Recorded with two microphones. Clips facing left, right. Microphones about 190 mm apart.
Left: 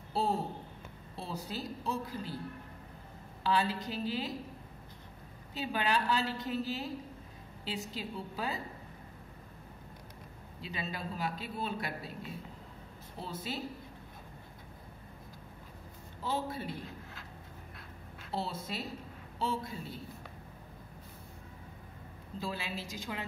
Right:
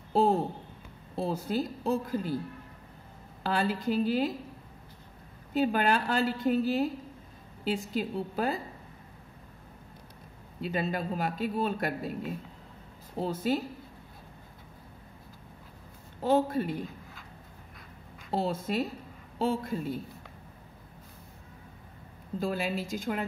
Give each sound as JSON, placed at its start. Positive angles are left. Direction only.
{"t": 0.1, "sound": "a sound", "side_deg": -50}
{"t": 1.1, "sound": "speech", "side_deg": -50}
{"t": 3.4, "sound": "speech", "side_deg": -50}
{"t": 5.5, "sound": "speech", "side_deg": -50}
{"t": 10.7, "sound": "speech", "side_deg": -50}
{"t": 16.2, "sound": "speech", "side_deg": -50}
{"t": 18.3, "sound": "speech", "side_deg": -50}
{"t": 22.4, "sound": "speech", "side_deg": -50}